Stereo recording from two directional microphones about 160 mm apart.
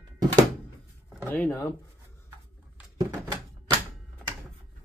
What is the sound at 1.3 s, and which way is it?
Speech, 15° left (ahead or behind).